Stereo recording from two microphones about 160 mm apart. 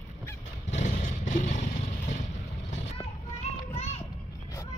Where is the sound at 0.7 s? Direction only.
50° left (ahead or behind).